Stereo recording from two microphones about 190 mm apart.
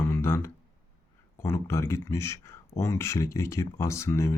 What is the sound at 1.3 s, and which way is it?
Speech, 15° left (ahead or behind).